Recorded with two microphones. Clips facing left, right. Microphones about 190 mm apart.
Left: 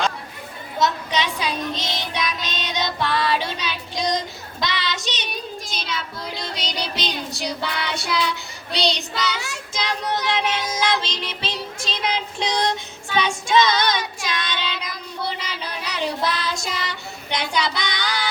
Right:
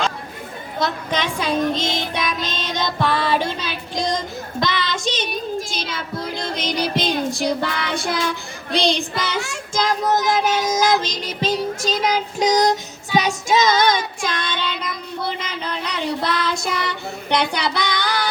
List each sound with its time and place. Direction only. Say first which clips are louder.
0.8 s child singing: left 1 dB; 50° right (ahead or behind)
4.6 s a sound: right 3 dB; 50° right (ahead or behind)
5.9 s child singing: right 3 dB; 50° right (ahead or behind)